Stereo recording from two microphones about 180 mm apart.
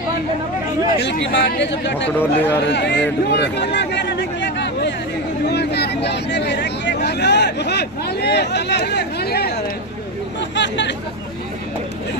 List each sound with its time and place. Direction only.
1.0 s speech: 75° left (ahead or behind)
2.1 s speech: 10° left (ahead or behind)
2.7 s chatter: 70° left (ahead or behind)
5.5 s vehicle: 65° left (ahead or behind)
10.5 s chatter: 80° left